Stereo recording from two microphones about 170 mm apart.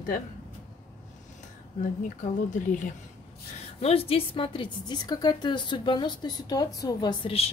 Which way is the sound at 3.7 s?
35° left (ahead or behind).